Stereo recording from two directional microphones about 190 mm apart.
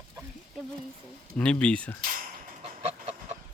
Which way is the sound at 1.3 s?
5° left (ahead or behind).